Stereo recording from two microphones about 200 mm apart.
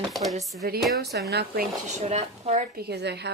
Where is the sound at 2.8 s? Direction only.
55° right (ahead or behind).